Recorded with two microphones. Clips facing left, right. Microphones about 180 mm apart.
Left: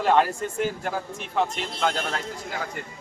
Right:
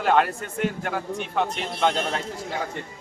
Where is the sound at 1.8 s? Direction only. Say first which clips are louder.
Right 3 dB; 25° right (ahead or behind).